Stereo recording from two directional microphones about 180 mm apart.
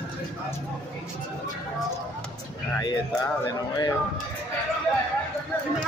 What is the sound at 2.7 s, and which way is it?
Speech, 25° left (ahead or behind).